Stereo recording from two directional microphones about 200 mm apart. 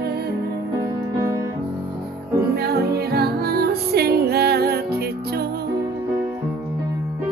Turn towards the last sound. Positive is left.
turn(degrees=-50)  # may be behind; listen again after turning